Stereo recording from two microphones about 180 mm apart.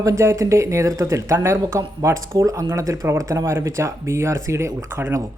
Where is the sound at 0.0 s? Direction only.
15° right (ahead or behind).